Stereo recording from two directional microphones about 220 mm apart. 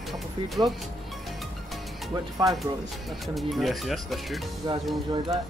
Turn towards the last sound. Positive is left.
turn(degrees=-20)  # may be behind; listen again after turning